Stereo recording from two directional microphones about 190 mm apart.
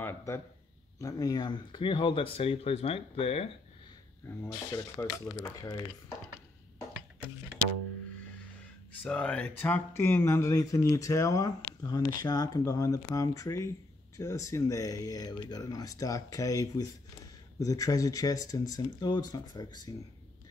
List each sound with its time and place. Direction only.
0.0 s a sound: 15° left (ahead or behind)
0.9 s speech: 20° left (ahead or behind)
4.4 s speech: 15° left (ahead or behind)
9.0 s speech: 5° left (ahead or behind); by 19.9 s 20° left (ahead or behind)